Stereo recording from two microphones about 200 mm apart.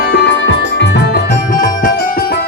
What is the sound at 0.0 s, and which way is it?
Music, 55° left (ahead or behind).